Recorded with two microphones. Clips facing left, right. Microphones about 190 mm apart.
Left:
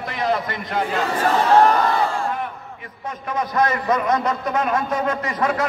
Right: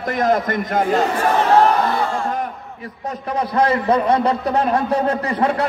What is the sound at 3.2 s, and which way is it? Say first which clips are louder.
A man's voice: right 3 dB; 30° right (ahead or behind).